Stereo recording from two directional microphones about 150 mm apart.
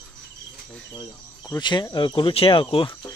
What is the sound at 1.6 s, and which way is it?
Speech, 30° left (ahead or behind).